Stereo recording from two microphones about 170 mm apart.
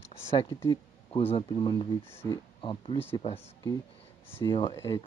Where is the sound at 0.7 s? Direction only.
35° left (ahead or behind).